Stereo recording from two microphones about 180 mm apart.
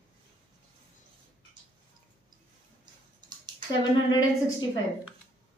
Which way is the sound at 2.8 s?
25° right (ahead or behind).